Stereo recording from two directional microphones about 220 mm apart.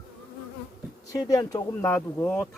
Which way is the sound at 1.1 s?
15° left (ahead or behind).